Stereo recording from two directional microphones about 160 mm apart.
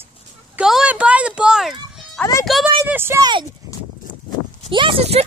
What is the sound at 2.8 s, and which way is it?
Speech, 15° right (ahead or behind).